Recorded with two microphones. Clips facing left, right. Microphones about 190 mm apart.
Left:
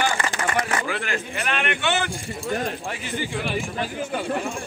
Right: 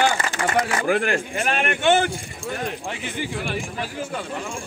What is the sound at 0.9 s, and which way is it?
A man's voice, 50° right (ahead or behind).